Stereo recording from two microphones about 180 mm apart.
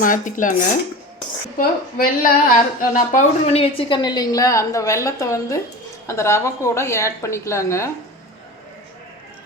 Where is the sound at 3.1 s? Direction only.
40° left (ahead or behind); by 7.9 s 15° left (ahead or behind).